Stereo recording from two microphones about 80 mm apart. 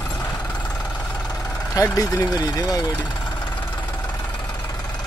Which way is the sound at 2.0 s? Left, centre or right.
Left.